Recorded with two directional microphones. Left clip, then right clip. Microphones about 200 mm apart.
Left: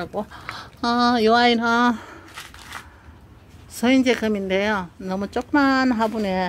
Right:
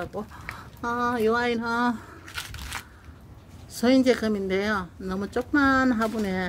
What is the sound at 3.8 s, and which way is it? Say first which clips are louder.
A woman's voice: left 2 dB; 10° left (ahead or behind).